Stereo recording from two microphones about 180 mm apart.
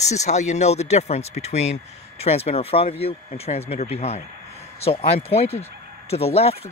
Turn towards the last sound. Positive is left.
turn(degrees=35)  # may be behind; listen again after turning